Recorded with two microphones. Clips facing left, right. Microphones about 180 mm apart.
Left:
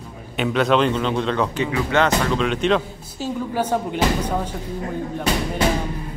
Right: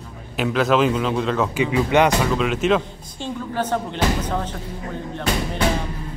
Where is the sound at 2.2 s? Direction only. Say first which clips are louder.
Even; 5° right (ahead or behind).